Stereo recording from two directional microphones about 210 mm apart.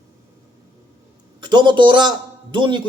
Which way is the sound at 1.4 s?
20° right (ahead or behind).